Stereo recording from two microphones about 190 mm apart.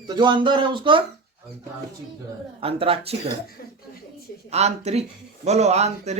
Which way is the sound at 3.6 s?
50° left (ahead or behind).